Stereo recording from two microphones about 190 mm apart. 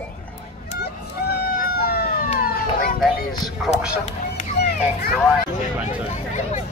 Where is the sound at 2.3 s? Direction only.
50° left (ahead or behind).